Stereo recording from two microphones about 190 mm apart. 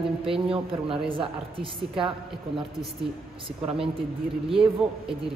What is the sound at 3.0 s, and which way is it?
Speech, 30° right (ahead or behind).